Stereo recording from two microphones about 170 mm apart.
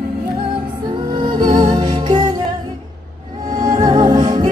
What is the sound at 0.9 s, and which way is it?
Music, 30° right (ahead or behind).